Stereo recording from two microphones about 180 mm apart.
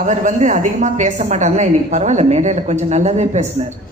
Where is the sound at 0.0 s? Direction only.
45° right (ahead or behind).